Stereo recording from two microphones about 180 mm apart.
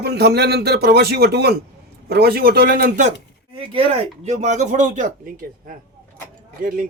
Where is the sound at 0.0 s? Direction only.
65° right (ahead or behind).